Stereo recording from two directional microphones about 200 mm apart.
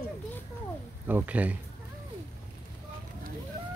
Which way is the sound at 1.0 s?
10° right (ahead or behind).